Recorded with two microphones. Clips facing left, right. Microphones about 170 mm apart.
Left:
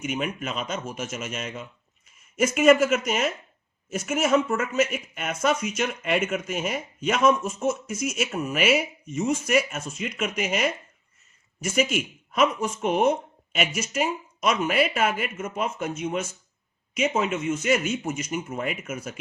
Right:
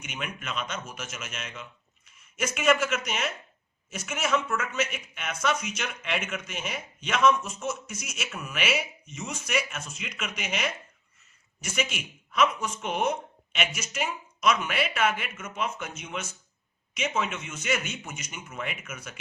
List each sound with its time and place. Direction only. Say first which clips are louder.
0.0 s speech: left 9 dB; 40° left (ahead or behind)
11.7 s speech: left 7 dB; 45° left (ahead or behind)
17.3 s speech: left 8 dB; 40° left (ahead or behind)